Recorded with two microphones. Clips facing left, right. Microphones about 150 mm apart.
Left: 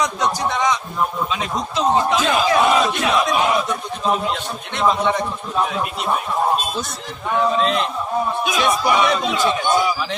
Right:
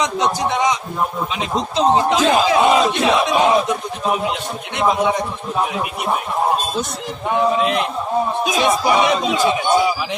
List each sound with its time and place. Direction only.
0.0 s speech: 20° right (ahead or behind)
1.3 s battle cry: 25° right (ahead or behind)
3.7 s speech: 15° right (ahead or behind)
7.3 s speech: 15° right (ahead or behind)
8.4 s battle cry: 20° right (ahead or behind)
9.2 s speech: 15° right (ahead or behind)